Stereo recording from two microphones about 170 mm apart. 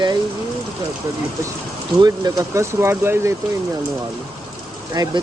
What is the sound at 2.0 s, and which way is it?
Speech, 20° right (ahead or behind).